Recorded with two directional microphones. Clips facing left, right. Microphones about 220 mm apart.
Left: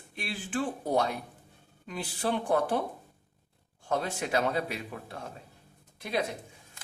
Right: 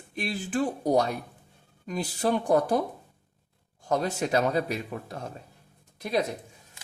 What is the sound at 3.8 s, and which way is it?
Speech, 40° right (ahead or behind).